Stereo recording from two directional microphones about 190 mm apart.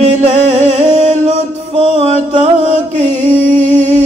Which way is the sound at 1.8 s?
30° right (ahead or behind).